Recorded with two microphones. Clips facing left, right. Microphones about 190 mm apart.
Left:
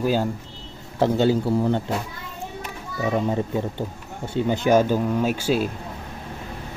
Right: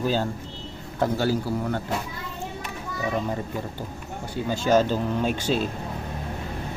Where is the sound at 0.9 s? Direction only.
25° left (ahead or behind).